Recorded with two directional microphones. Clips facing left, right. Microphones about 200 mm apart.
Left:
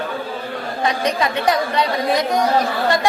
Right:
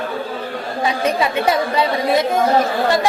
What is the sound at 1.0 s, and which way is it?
Speech, 5° right (ahead or behind).